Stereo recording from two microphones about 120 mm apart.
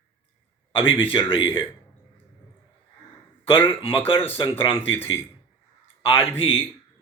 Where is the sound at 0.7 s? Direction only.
50° left (ahead or behind).